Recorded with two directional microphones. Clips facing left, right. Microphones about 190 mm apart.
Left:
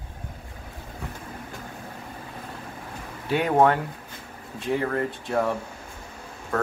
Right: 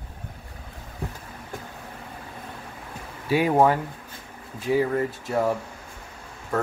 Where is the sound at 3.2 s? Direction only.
5° right (ahead or behind).